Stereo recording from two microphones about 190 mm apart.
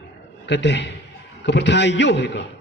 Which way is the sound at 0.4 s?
65° left (ahead or behind).